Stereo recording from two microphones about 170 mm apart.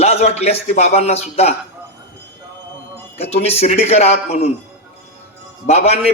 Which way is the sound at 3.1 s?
40° left (ahead or behind).